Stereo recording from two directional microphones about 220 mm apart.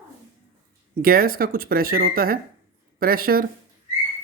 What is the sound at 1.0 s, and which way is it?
Speech, 40° right (ahead or behind).